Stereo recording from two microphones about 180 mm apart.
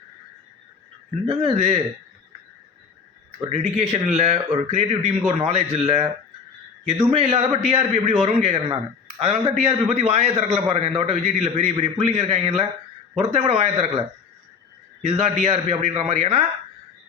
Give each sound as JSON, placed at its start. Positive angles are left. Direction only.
{"t": 1.3, "sound": "a man's voice", "side_deg": -35}
{"t": 3.5, "sound": "a man's voice", "side_deg": -35}
{"t": 15.0, "sound": "a man's voice", "side_deg": -35}